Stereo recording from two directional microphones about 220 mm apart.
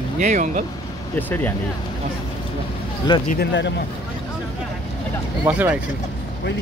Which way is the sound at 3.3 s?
50° left (ahead or behind).